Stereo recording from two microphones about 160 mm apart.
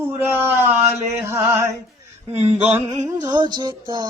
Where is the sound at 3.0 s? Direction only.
20° right (ahead or behind).